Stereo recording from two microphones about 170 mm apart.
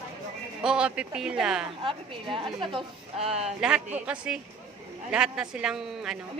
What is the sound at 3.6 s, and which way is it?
A man's voice, 5° right (ahead or behind).